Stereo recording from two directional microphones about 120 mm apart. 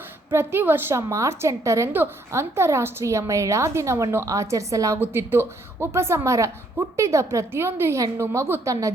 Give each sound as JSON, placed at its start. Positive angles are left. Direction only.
{"t": 0.3, "sound": "a woman's voice", "side_deg": -20}